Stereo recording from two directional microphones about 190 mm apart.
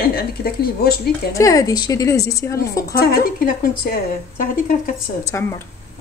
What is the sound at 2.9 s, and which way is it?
Speech, 50° left (ahead or behind).